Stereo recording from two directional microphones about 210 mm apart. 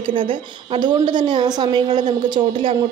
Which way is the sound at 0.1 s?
25° right (ahead or behind).